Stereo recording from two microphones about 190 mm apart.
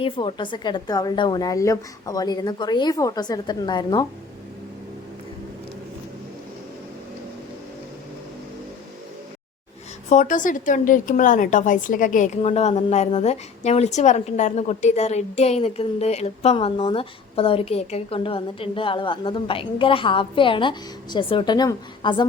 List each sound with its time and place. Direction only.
0.0 s a woman's voice: 25° left (ahead or behind)
10.1 s a woman's voice: 40° left (ahead or behind); by 22.3 s 25° left (ahead or behind)